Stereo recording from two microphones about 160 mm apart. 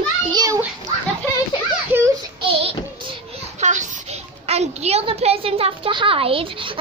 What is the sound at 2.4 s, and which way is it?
Child singing, 35° right (ahead or behind).